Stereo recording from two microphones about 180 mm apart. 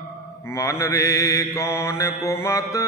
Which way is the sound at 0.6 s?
15° left (ahead or behind).